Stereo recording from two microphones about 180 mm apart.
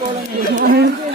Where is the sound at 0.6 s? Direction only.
55° right (ahead or behind).